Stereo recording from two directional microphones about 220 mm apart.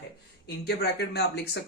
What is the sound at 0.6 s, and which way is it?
Speech, 50° left (ahead or behind).